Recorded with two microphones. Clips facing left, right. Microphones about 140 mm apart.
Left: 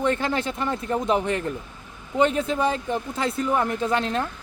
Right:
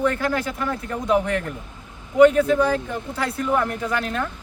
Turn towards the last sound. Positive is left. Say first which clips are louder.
# left 1 dB
turn(degrees=25)  # may be behind; listen again after turning